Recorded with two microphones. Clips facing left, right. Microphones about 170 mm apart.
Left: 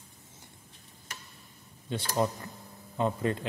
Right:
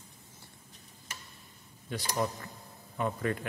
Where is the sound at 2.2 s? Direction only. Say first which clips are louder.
Left 4 dB; 20° left (ahead or behind).